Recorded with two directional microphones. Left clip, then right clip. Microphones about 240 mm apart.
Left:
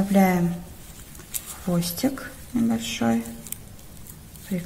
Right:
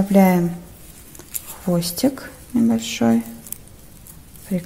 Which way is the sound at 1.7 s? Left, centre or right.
Right.